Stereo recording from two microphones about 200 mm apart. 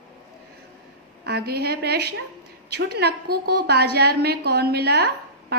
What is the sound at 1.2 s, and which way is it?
A woman's voice, 50° right (ahead or behind).